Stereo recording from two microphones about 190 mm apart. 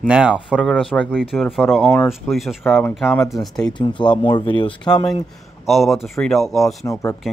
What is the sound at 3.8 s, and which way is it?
Speech, 25° left (ahead or behind).